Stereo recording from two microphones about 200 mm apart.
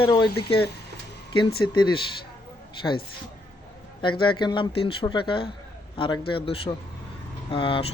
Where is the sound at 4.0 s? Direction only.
25° left (ahead or behind).